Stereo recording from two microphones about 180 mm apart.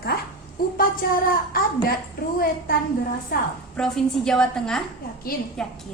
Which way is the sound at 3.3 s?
55° left (ahead or behind).